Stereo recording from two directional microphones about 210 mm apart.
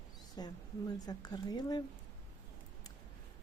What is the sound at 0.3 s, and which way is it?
Speech, 20° left (ahead or behind).